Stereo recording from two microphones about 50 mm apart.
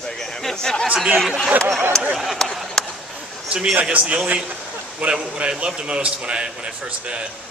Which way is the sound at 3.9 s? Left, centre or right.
Right.